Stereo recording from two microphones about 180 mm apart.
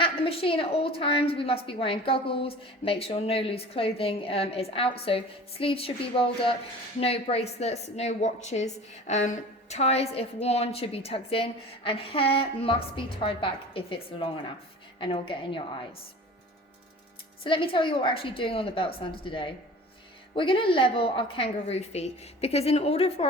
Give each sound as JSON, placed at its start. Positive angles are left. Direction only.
{"t": 0.0, "sound": "a woman's voice", "side_deg": 30}
{"t": 17.4, "sound": "a woman's voice", "side_deg": 30}